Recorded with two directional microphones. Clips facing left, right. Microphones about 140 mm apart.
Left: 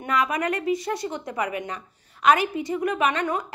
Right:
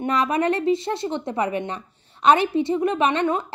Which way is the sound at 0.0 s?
30° right (ahead or behind).